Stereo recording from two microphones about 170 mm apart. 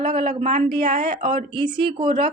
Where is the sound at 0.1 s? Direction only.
30° right (ahead or behind).